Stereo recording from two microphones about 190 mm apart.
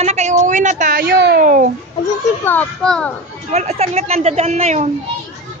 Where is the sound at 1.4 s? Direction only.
45° right (ahead or behind).